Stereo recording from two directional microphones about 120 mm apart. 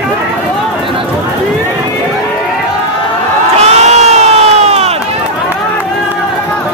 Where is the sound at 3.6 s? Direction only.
65° right (ahead or behind).